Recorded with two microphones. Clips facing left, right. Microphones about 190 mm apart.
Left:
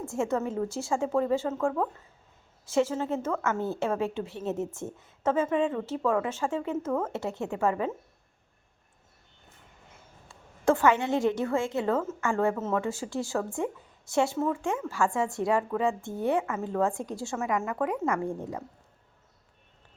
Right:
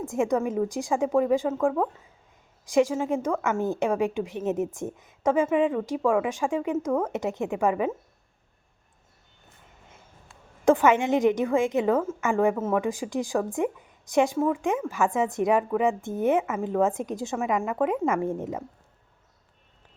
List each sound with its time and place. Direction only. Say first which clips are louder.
0.0 s a woman's voice: right 4 dB; 15° right (ahead or behind)
10.7 s a woman's voice: right 3 dB; 15° right (ahead or behind)